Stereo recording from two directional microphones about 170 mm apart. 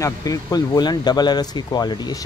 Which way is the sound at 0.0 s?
20° left (ahead or behind).